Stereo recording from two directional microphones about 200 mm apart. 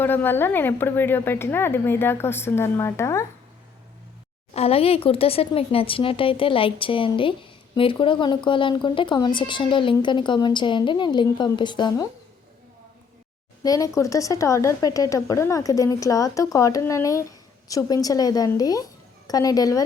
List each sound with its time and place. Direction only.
0.0 s speech: 10° left (ahead or behind)
4.5 s speech: 30° left (ahead or behind)
13.6 s speech: 15° left (ahead or behind)